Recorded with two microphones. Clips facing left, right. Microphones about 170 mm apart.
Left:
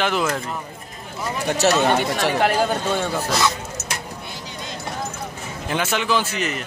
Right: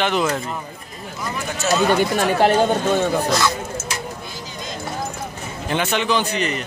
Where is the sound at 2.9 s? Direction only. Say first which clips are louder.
Right 4 dB; 15° right (ahead or behind).